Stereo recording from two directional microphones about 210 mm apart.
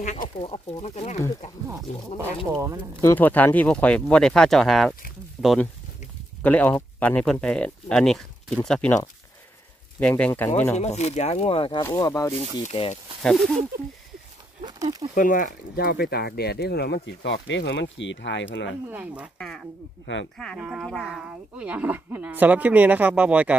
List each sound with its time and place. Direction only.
0.0 s speech: 35° left (ahead or behind)
2.5 s speech: 15° right (ahead or behind)
3.0 s a woman's voice: 10° left (ahead or behind)
9.9 s speech: 5° left (ahead or behind)
10.8 s speech: 30° left (ahead or behind)
11.8 s speech: 15° left (ahead or behind)
13.2 s a woman's voice: centre (ahead or behind)
14.6 s speech: 20° right (ahead or behind)
15.1 s speech: 40° left (ahead or behind); by 18.8 s 60° left (ahead or behind)
18.9 s a woman's voice: 5° right (ahead or behind)